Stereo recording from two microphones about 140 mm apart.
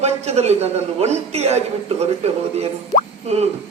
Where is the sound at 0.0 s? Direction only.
50° right (ahead or behind).